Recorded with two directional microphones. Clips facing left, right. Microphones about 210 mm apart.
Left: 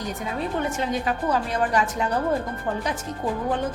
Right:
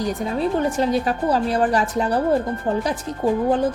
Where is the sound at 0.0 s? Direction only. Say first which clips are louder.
Right 7 dB; 35° right (ahead or behind).